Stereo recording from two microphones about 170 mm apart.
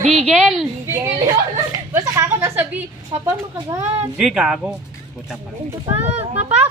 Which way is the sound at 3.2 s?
20° right (ahead or behind).